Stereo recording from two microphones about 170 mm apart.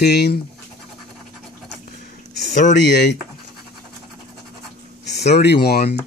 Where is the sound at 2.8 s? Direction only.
85° left.